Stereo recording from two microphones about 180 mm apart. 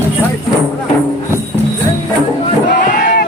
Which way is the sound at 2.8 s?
45° left (ahead or behind).